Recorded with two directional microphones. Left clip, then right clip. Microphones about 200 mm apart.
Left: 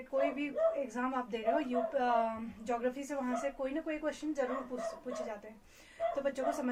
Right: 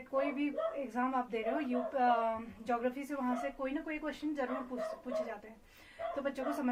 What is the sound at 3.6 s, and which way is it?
Speech, 15° left (ahead or behind).